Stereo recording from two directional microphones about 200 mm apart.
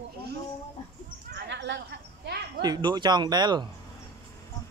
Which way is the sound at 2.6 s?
20° right (ahead or behind).